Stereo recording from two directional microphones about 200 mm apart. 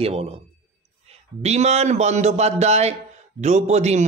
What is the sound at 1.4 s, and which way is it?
A man's voice, 30° right (ahead or behind).